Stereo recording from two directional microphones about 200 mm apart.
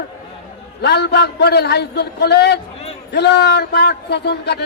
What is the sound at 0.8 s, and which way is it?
A man's voice, 55° left (ahead or behind).